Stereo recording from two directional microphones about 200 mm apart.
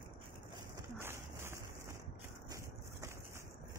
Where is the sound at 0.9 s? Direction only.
10° right (ahead or behind).